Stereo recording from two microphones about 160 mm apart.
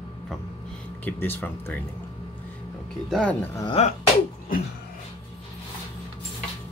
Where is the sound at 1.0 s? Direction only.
10° left (ahead or behind).